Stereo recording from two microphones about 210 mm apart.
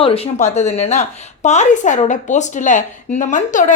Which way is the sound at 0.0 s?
25° left (ahead or behind).